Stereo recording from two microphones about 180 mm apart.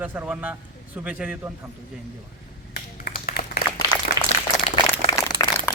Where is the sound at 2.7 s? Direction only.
55° left (ahead or behind).